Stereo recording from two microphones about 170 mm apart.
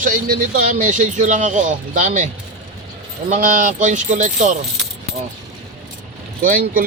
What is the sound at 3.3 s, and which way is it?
A man's voice, 50° right (ahead or behind).